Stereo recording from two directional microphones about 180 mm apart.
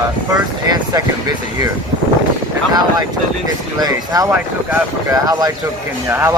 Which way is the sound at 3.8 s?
20° right (ahead or behind).